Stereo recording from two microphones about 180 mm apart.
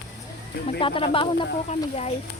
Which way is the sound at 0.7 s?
30° left (ahead or behind).